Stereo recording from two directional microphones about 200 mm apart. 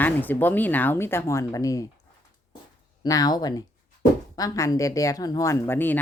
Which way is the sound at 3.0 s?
20° left (ahead or behind).